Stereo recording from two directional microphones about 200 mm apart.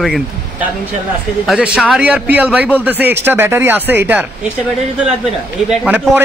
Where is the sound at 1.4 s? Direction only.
5° right (ahead or behind).